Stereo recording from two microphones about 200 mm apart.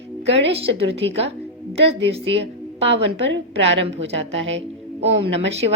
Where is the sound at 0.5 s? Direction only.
30° right (ahead or behind).